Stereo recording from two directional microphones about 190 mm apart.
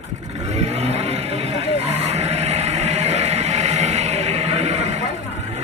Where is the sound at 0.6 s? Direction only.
35° right (ahead or behind).